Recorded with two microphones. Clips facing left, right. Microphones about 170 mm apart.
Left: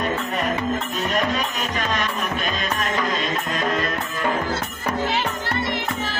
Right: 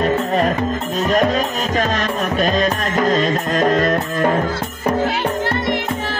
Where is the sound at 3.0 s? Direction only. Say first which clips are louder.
Right 8 dB; 45° right (ahead or behind).